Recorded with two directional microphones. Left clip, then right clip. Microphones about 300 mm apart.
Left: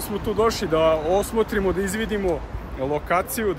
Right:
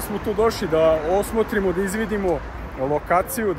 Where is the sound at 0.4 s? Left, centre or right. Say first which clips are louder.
Right 1 dB; centre.